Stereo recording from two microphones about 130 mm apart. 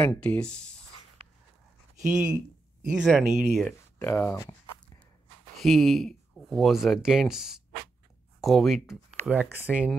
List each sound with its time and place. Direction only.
0.0 s speech: 10° left (ahead or behind)
1.2 s dog: 45° right (ahead or behind)
2.0 s speech: 5° right (ahead or behind)
4.0 s speech: 15° left (ahead or behind)
5.6 s speech: centre (ahead or behind)